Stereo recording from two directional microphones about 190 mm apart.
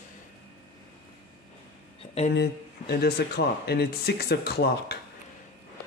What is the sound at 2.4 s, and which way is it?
Speech, 60° left (ahead or behind).